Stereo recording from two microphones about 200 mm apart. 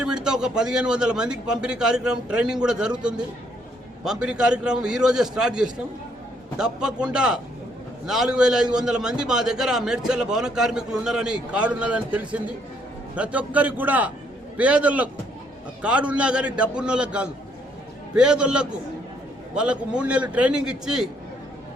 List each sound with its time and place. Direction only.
0.0 s a man's voice: 5° right (ahead or behind)
4.0 s a man's voice: 5° right (ahead or behind)